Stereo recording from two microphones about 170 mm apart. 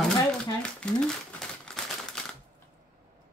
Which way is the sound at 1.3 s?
5° left (ahead or behind).